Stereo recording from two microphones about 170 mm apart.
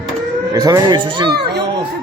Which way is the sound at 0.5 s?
20° right (ahead or behind).